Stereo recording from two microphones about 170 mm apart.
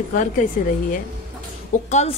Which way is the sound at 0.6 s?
50° left (ahead or behind).